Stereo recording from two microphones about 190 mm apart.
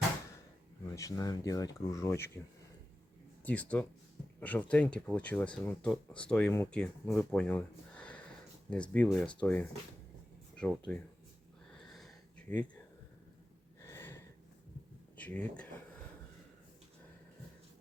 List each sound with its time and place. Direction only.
0.9 s speech: 15° left (ahead or behind)
3.4 s speech: 10° left (ahead or behind)
11.8 s a sound: centre (ahead or behind)
13.8 s snort: 15° left (ahead or behind)
15.1 s speech: 10° left (ahead or behind)